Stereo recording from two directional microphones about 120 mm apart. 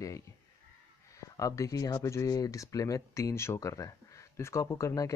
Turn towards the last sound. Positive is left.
turn(degrees=30)  # may be behind; listen again after turning